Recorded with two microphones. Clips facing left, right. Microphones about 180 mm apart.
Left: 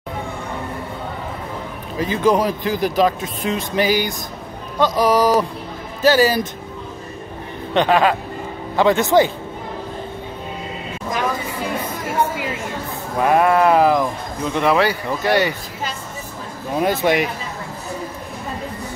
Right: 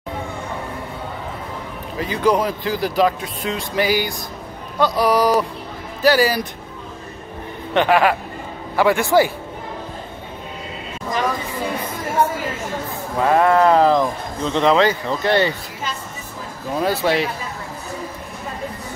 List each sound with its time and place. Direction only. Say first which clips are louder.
2.0 s speech: left 1 dB; 20° left (ahead or behind)
7.7 s speech: even; 20° left (ahead or behind)
13.2 s speech: even; 15° left (ahead or behind)
16.8 s speech: left 1 dB; 15° left (ahead or behind)